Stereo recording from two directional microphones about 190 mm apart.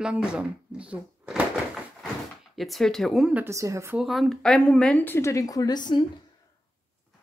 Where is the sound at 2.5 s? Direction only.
Centre (ahead or behind).